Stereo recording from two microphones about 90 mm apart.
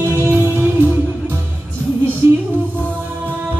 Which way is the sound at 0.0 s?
25° right (ahead or behind).